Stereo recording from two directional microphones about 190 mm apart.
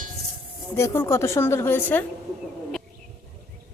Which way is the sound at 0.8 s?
15° left (ahead or behind).